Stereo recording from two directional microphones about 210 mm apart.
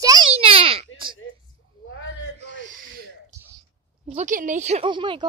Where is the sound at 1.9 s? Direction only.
70° left (ahead or behind).